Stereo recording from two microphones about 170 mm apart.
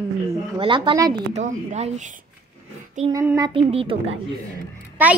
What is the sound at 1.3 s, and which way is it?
Speech, 40° right (ahead or behind).